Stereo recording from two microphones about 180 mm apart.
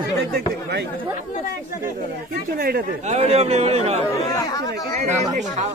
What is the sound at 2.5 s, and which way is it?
Speech, 55° right (ahead or behind).